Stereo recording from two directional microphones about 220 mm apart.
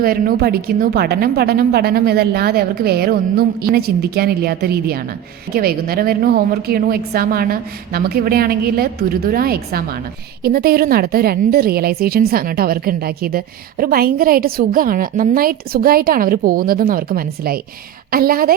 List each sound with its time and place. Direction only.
0.0 s a woman's voice: 40° right (ahead or behind)